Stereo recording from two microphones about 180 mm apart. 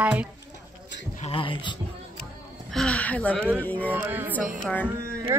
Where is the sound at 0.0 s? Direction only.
5° right (ahead or behind).